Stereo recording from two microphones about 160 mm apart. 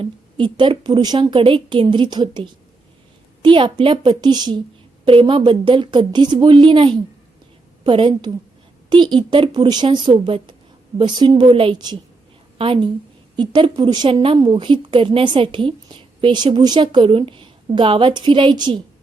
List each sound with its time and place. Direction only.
0.0 s a woman's voice: 30° right (ahead or behind)